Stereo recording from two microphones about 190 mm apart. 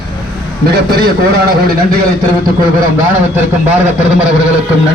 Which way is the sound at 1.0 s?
55° right (ahead or behind).